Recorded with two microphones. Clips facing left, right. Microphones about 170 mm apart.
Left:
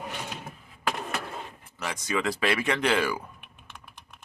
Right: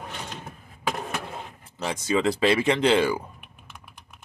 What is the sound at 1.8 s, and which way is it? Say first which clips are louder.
Speech: right 5 dB; 25° right (ahead or behind).